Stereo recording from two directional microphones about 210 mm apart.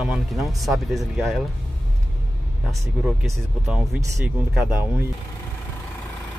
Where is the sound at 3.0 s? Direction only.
Centre (ahead or behind).